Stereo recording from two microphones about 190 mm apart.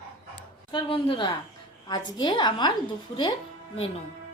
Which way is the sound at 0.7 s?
25° left (ahead or behind).